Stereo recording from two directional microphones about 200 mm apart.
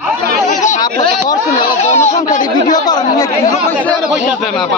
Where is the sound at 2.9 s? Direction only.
20° left (ahead or behind).